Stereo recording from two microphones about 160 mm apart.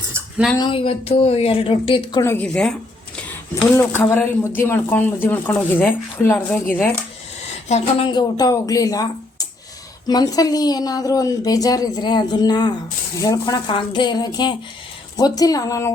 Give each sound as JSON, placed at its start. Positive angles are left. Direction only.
{"t": 0.6, "sound": "a woman's voice", "side_deg": 35}
{"t": 2.2, "sound": "speech", "side_deg": 10}
{"t": 7.7, "sound": "speech", "side_deg": 40}
{"t": 10.1, "sound": "speech", "side_deg": 25}